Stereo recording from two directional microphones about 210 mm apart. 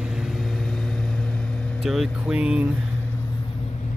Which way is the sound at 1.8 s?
Centre (ahead or behind).